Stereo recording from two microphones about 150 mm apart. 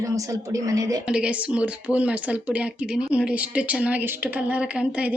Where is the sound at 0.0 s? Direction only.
20° right (ahead or behind).